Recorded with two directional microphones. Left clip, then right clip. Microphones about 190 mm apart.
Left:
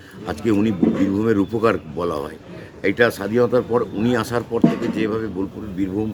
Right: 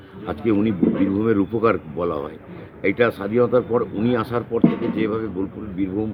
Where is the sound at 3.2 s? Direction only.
20° left (ahead or behind).